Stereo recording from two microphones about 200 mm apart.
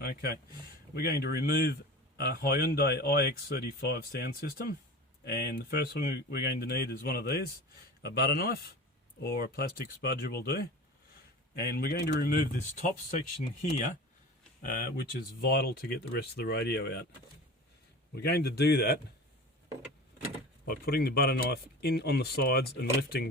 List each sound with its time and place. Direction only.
0.0 s speech: 50° left (ahead or behind)
15.2 s speech: 50° left (ahead or behind)
18.1 s speech: 55° left (ahead or behind)
20.7 s speech: 50° left (ahead or behind)